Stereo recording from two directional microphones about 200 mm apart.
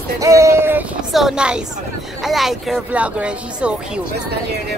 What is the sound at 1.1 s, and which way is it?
Speech, centre (ahead or behind).